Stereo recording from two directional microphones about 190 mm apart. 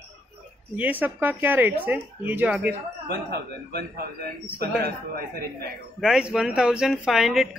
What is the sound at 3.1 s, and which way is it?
A man's voice, 55° right (ahead or behind).